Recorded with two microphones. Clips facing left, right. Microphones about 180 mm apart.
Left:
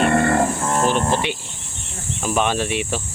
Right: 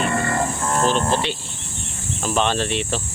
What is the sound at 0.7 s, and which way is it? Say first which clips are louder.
Speech: right 3 dB; 15° left (ahead or behind).